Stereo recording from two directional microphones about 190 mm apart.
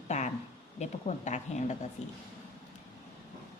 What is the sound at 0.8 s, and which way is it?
A woman's voice, 40° left (ahead or behind).